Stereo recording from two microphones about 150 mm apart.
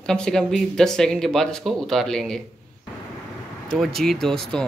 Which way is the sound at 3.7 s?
Centre (ahead or behind).